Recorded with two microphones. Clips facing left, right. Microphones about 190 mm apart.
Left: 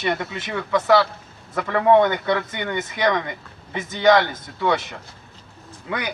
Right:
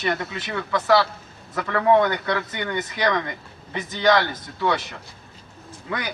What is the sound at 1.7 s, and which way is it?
Speech, 20° left (ahead or behind).